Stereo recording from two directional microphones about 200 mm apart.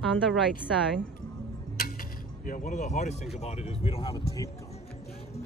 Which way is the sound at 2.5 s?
40° left (ahead or behind).